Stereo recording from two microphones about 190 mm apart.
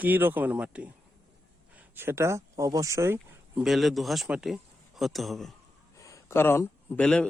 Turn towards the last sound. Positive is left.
turn(degrees=5)  # may be behind; listen again after turning